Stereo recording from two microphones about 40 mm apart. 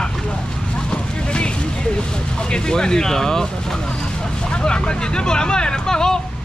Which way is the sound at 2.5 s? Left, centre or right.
Centre.